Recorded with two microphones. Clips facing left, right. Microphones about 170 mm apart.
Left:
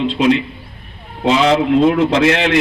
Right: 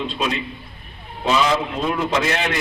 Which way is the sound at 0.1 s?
75° left (ahead or behind).